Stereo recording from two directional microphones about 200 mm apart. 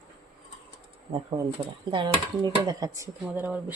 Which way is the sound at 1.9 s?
25° right (ahead or behind).